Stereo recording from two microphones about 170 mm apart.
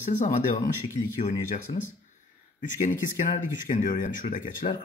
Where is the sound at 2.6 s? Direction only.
50° left (ahead or behind).